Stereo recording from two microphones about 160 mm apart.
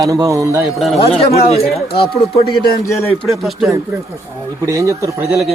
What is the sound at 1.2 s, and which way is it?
Speech, 40° left (ahead or behind).